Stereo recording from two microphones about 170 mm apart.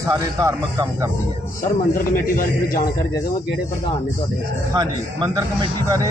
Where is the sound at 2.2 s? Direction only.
55° left (ahead or behind).